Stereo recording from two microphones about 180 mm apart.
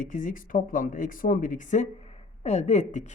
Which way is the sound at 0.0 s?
45° left (ahead or behind).